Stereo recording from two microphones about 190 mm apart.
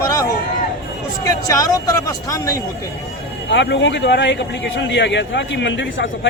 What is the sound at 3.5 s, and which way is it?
A man's voice, 70° left (ahead or behind).